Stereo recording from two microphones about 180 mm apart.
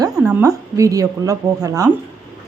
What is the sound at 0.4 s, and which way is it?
A woman's voice, 20° right (ahead or behind).